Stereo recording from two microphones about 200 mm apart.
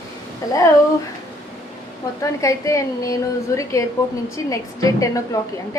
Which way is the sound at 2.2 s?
15° left (ahead or behind).